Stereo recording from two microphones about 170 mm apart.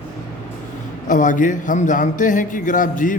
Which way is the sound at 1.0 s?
50° left (ahead or behind).